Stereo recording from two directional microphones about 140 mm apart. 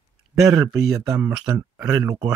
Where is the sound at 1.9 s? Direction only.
25° right (ahead or behind).